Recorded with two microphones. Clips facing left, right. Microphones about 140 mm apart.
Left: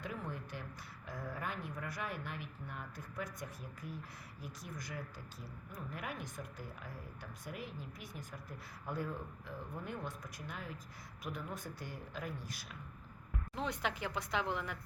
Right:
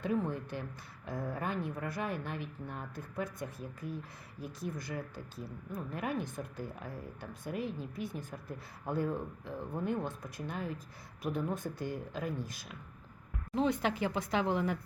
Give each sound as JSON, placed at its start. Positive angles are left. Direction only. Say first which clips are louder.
{"t": 0.0, "sound": "speech", "louder": "right 10 dB", "side_deg": -25}
{"t": 13.6, "sound": "speech", "louder": "right 8 dB", "side_deg": -30}